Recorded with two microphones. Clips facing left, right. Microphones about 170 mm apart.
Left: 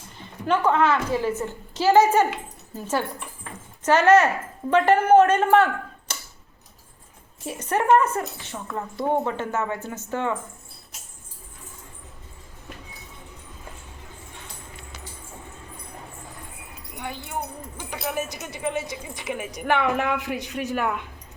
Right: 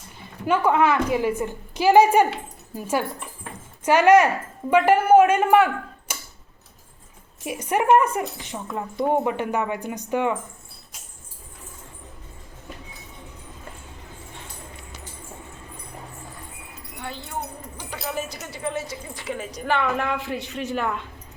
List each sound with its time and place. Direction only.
0.4 s speech: 10° right (ahead or behind)
7.4 s speech: 10° right (ahead or behind)
17.0 s wind chime: 15° left (ahead or behind)
18.1 s speech: 15° left (ahead or behind)